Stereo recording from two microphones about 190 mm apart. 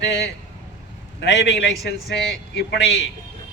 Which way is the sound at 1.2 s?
70° left (ahead or behind).